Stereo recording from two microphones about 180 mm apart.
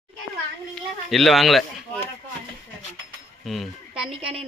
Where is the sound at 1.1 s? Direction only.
Centre (ahead or behind).